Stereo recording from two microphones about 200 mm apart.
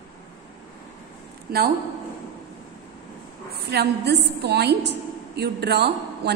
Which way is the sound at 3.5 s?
55° right (ahead or behind).